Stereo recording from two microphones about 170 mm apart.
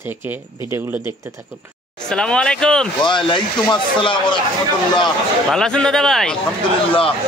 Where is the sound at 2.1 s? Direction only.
5° left (ahead or behind).